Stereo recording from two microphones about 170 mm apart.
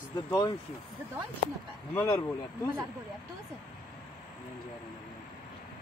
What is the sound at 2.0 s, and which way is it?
Speech, 20° left (ahead or behind).